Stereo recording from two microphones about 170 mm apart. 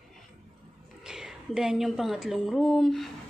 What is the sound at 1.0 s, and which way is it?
A woman's voice, 5° right (ahead or behind).